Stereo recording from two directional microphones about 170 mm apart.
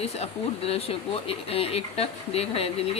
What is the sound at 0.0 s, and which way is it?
A woman's voice, 35° left (ahead or behind).